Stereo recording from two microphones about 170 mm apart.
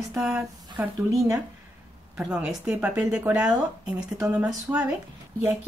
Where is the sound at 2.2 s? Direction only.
5° right (ahead or behind).